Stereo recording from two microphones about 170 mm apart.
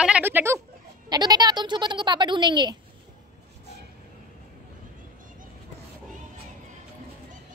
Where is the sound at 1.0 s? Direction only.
25° right (ahead or behind).